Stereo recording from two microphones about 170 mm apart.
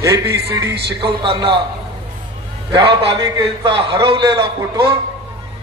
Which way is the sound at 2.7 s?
30° right (ahead or behind).